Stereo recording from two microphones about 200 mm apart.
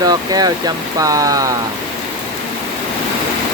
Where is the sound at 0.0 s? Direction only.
20° right (ahead or behind).